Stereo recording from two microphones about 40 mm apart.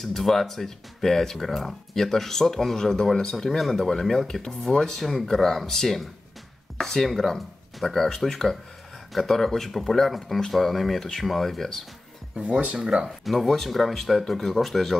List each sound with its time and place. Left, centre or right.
0.0 s speech: centre
3.4 s speech: centre
12.4 s speech: right
12.7 s speech: centre
13.0 s speech: centre